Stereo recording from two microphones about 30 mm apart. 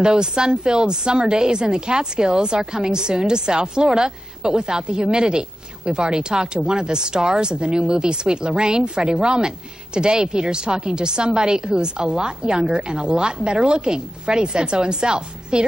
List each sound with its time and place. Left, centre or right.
0.0 s a woman's voice: right